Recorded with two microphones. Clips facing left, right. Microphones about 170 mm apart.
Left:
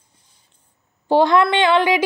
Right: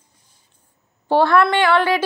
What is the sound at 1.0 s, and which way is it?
Speech, 15° left (ahead or behind).